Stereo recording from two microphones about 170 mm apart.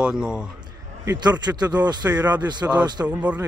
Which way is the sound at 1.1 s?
25° right (ahead or behind).